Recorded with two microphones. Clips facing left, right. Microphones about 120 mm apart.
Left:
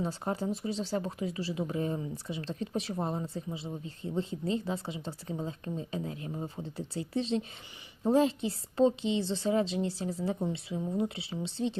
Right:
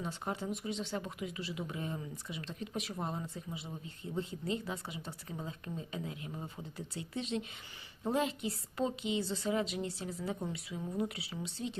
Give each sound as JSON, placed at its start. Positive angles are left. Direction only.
{"t": 0.0, "sound": "a woman's voice", "side_deg": 35}